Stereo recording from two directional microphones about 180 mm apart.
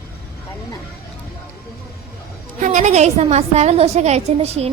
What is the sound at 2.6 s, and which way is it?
A woman's voice, 40° right (ahead or behind).